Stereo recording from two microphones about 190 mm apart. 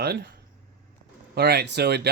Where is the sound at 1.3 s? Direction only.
60° right (ahead or behind).